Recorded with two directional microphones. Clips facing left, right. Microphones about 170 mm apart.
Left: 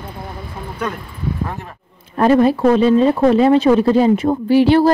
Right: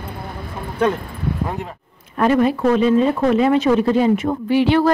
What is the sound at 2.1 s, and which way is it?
A woman's voice, 35° left (ahead or behind).